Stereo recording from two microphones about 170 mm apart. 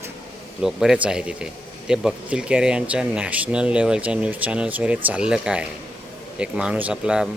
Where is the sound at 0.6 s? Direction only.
5° right (ahead or behind).